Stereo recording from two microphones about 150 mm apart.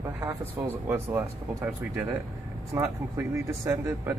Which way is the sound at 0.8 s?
15° right (ahead or behind).